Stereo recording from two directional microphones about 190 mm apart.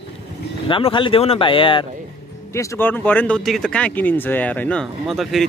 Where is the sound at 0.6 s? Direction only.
25° left (ahead or behind).